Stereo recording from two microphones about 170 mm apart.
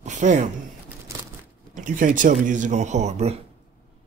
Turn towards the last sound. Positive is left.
turn(degrees=-40)  # may be behind; listen again after turning